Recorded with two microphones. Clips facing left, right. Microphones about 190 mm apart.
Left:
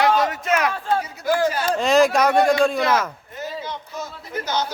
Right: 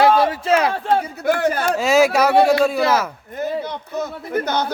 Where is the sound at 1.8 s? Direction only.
5° right (ahead or behind).